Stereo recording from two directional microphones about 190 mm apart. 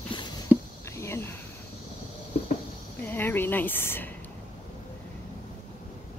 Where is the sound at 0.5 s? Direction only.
10° right (ahead or behind).